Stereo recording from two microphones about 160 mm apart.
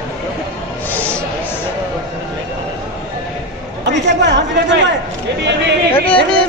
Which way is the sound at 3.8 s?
90° right.